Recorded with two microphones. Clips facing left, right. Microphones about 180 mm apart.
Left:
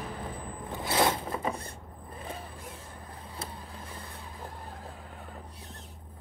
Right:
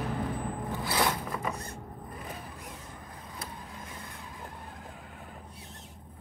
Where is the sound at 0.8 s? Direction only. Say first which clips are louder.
Left 4 dB; 25° left (ahead or behind).